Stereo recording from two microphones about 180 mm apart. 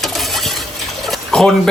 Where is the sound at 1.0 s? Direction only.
Centre (ahead or behind).